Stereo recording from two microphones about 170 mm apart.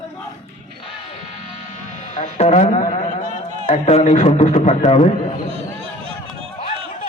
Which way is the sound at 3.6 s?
40° left (ahead or behind).